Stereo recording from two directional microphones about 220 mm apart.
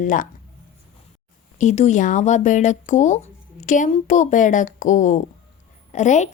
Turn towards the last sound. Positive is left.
turn(degrees=30)  # may be behind; listen again after turning